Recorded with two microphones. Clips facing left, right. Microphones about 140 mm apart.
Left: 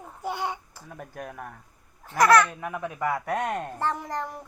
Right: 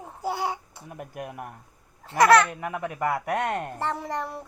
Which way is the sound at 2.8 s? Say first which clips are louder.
Right 1 dB; 65° right (ahead or behind).